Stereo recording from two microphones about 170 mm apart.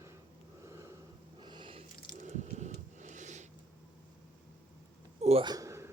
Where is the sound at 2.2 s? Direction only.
45° right (ahead or behind).